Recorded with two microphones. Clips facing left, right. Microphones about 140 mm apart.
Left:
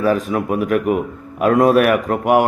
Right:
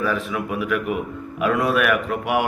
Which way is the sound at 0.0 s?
40° left (ahead or behind).